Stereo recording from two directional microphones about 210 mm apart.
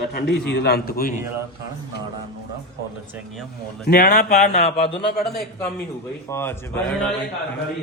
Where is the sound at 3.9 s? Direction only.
45° left (ahead or behind).